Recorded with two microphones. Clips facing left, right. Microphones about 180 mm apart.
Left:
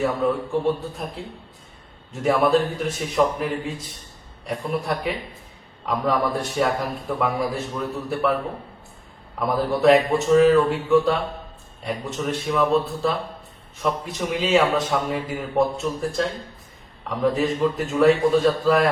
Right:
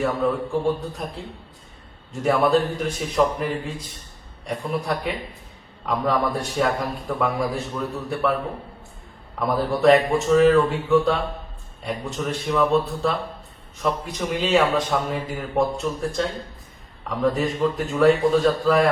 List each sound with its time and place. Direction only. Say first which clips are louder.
0.5 s a man's voice: even; centre (ahead or behind)
9.4 s a man's voice: even; centre (ahead or behind)